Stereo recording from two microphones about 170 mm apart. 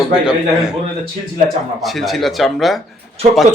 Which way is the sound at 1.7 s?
Centre (ahead or behind).